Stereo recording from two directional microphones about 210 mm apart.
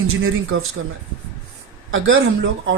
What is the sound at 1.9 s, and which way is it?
Speech, 70° right (ahead or behind).